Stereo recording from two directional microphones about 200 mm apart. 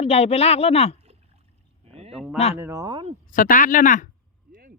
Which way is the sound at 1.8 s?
30° right (ahead or behind).